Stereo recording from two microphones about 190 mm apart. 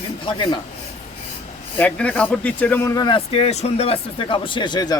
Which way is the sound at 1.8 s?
5° left (ahead or behind).